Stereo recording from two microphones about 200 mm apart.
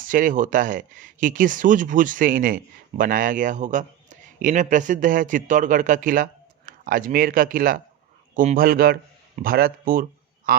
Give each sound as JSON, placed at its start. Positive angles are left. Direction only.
{"t": 0.0, "sound": "a man's voice", "side_deg": -45}